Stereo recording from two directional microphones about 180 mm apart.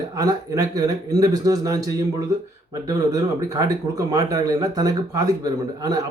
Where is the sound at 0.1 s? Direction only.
20° right (ahead or behind).